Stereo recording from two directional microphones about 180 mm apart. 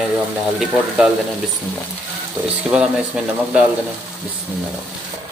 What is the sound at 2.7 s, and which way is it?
Speech, 5° right (ahead or behind).